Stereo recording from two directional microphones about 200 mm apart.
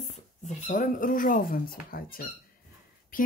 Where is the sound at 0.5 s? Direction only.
40° left (ahead or behind).